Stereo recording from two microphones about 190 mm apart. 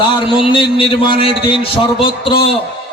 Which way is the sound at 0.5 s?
25° left (ahead or behind).